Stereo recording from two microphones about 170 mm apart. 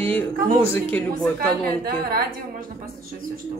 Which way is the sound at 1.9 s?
60° right (ahead or behind).